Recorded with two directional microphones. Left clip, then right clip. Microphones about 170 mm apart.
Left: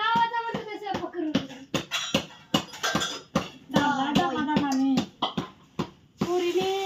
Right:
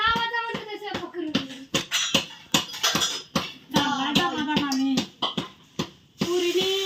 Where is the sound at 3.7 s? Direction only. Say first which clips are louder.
Right 1 dB; 25° left (ahead or behind).